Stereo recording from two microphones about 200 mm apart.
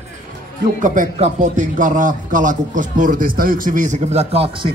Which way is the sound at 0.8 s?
35° right (ahead or behind).